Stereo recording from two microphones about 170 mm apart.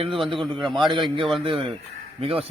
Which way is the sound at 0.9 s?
30° right (ahead or behind).